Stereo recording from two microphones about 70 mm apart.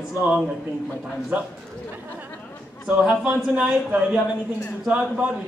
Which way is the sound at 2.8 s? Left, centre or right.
Centre.